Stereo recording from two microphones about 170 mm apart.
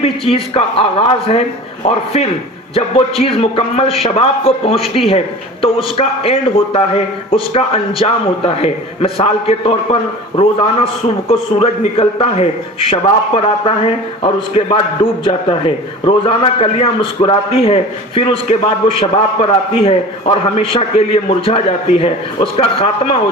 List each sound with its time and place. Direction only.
0.0 s a man's voice: 35° left (ahead or behind)
2.7 s a man's voice: 35° left (ahead or behind)